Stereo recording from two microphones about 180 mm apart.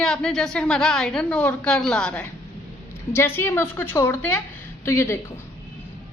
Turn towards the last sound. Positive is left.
turn(degrees=15)  # may be behind; listen again after turning